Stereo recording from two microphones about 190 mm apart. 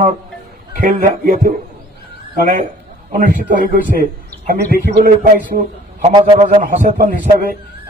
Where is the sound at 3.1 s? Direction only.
45° right (ahead or behind).